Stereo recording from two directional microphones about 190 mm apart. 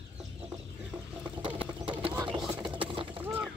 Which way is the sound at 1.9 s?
25° right (ahead or behind).